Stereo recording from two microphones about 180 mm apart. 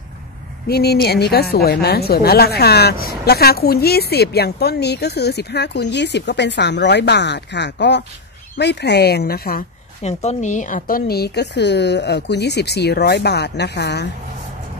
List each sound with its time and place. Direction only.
0.7 s a woman's voice: 60° left (ahead or behind)
10.0 s a woman's voice: 40° left (ahead or behind); by 14.0 s 70° left (ahead or behind)